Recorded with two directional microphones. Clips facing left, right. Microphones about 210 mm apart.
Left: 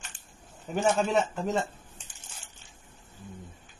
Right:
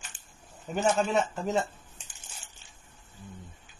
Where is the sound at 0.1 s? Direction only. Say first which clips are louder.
Left 2 dB; 25° left (ahead or behind).